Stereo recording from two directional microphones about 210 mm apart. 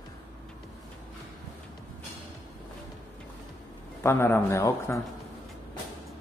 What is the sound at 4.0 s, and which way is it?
A man's voice, 10° left (ahead or behind).